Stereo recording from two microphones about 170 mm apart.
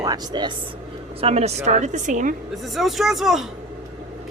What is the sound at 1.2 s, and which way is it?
A woman's voice, 40° right (ahead or behind).